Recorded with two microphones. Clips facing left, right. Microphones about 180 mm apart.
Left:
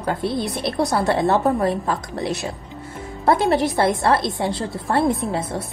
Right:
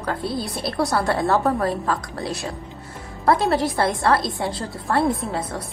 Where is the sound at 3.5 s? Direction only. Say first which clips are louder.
Left 2 dB; 25° left (ahead or behind).